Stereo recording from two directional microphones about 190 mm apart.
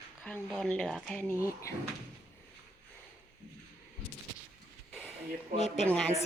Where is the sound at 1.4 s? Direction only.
15° left (ahead or behind).